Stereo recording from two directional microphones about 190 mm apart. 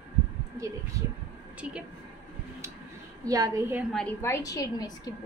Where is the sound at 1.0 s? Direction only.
15° right (ahead or behind).